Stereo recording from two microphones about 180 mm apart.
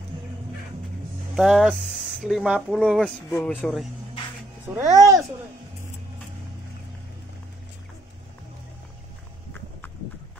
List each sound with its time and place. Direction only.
1.3 s speech: centre (ahead or behind)
4.6 s speech: 15° right (ahead or behind)